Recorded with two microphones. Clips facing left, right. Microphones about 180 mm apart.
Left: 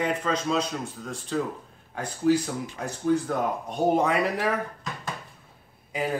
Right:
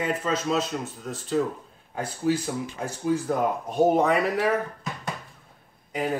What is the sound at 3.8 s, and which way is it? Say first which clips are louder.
Speech: right 2 dB; centre (ahead or behind).